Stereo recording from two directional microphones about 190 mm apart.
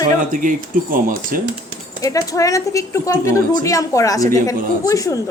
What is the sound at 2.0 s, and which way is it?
A woman's voice, 20° left (ahead or behind).